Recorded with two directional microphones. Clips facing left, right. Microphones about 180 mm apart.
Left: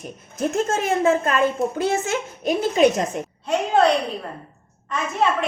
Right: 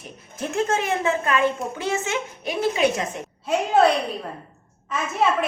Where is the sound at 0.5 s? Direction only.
40° left (ahead or behind).